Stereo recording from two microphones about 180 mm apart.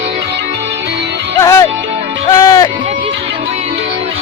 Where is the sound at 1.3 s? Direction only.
20° left (ahead or behind).